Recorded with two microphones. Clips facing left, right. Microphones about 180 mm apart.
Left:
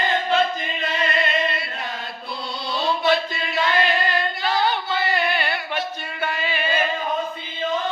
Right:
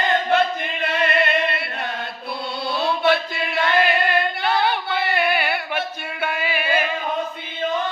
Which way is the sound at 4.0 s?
60° right (ahead or behind).